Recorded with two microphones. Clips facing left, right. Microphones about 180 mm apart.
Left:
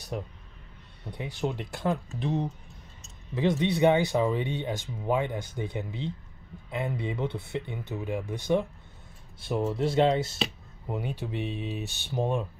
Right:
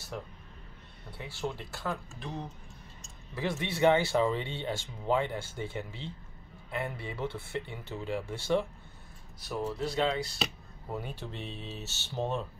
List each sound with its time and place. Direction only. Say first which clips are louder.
0.1 s speech: left 5 dB; 15° left (ahead or behind)
10.9 s speech: left 5 dB; 15° left (ahead or behind)